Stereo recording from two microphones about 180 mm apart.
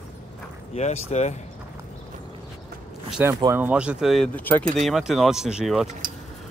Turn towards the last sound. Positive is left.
turn(degrees=0)  # may be behind; listen again after turning